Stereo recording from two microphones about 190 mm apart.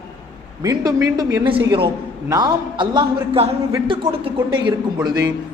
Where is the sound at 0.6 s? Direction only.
20° right (ahead or behind).